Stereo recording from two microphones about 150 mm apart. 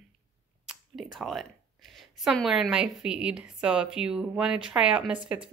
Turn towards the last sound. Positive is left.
turn(degrees=-5)  # may be behind; listen again after turning